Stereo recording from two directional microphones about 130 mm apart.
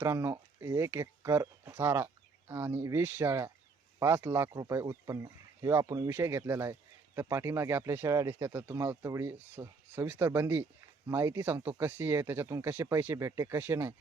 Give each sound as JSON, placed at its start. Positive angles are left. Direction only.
{"t": 0.0, "sound": "speech", "side_deg": -20}